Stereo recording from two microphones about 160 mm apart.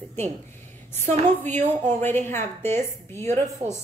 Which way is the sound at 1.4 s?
15° left (ahead or behind).